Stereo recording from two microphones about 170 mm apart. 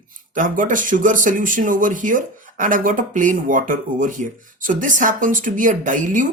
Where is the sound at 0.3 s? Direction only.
50° right (ahead or behind).